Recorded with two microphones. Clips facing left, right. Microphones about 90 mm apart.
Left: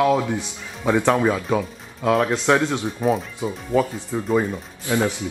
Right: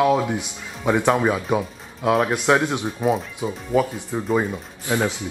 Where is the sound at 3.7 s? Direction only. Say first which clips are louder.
Even; 20° right (ahead or behind).